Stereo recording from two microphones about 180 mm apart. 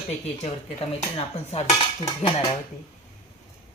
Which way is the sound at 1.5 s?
35° left (ahead or behind).